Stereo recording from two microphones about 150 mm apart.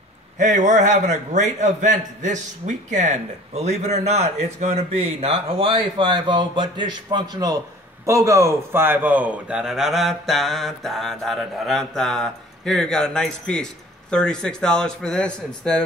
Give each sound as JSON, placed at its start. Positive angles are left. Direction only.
{"t": 0.4, "sound": "a man's voice", "side_deg": -55}